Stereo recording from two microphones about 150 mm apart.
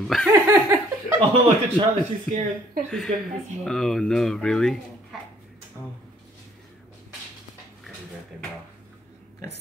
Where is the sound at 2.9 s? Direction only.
5° left (ahead or behind).